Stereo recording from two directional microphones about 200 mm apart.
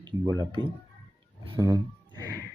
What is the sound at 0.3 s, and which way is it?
Speech, 20° right (ahead or behind).